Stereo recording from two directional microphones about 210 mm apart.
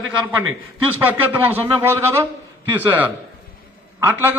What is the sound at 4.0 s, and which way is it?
Speech, 10° right (ahead or behind).